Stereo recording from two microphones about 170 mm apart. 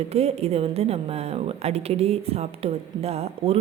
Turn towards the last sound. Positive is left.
turn(degrees=-35)  # may be behind; listen again after turning